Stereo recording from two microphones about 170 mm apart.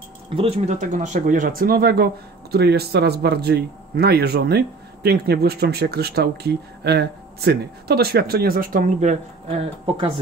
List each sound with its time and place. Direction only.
0.4 s speech: 40° right (ahead or behind)